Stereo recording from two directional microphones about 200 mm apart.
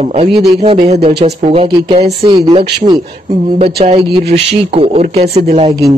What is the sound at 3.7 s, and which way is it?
A man's voice, 30° right (ahead or behind).